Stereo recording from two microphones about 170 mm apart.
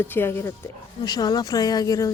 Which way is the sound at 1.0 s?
25° left (ahead or behind).